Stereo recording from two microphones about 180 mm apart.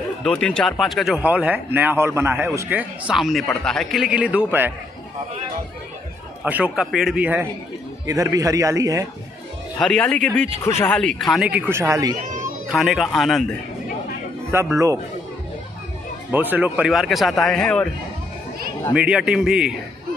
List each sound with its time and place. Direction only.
0.2 s speech: 5° left (ahead or behind); by 4.7 s 10° right (ahead or behind)
6.4 s speech: 5° right (ahead or behind)
8.1 s a man's voice: 20° right (ahead or behind)
9.8 s speech: 5° left (ahead or behind)
11.7 s speech: 15° right (ahead or behind)
12.6 s speech: centre (ahead or behind)
14.5 s speech: 15° right (ahead or behind)
16.3 s speech: 10° right (ahead or behind)
18.9 s speech: 5° right (ahead or behind)